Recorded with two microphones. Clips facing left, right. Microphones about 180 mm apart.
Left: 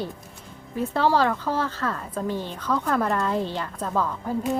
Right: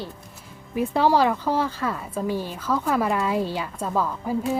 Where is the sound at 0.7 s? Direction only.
10° right (ahead or behind).